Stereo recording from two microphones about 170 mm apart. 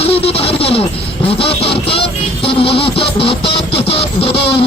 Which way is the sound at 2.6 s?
30° left (ahead or behind).